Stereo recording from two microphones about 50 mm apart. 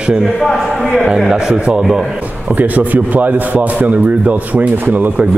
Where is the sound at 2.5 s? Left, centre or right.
Right.